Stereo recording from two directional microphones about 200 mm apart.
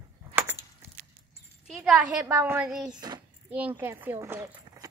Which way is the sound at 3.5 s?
10° right (ahead or behind).